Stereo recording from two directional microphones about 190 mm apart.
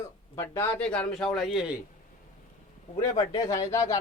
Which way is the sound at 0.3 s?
10° left (ahead or behind).